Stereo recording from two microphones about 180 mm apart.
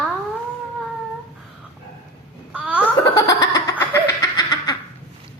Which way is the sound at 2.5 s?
10° right (ahead or behind).